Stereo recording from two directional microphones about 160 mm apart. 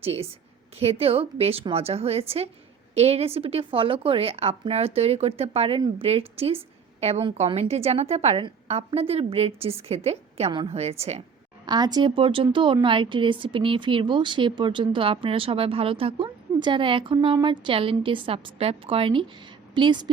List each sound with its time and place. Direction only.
0.0 s speech: 40° right (ahead or behind)
11.6 s a woman's voice: 25° right (ahead or behind)